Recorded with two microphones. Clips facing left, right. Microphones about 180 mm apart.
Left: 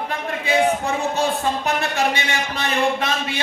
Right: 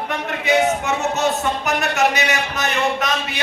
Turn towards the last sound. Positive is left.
turn(degrees=30)  # may be behind; listen again after turning